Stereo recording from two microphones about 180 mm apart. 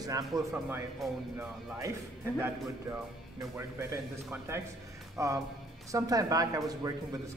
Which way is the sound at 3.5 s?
15° right (ahead or behind).